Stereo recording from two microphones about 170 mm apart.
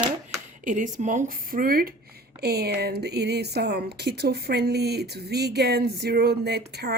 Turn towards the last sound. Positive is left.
turn(degrees=-75)  # may be behind; listen again after turning